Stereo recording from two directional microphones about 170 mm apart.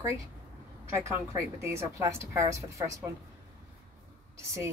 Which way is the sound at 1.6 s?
15° right (ahead or behind).